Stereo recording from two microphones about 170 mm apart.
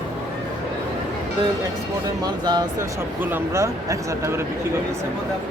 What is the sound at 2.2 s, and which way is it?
Speech, 25° right (ahead or behind).